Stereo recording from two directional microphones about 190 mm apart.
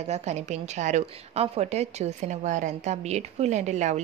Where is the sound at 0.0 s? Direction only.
35° right (ahead or behind).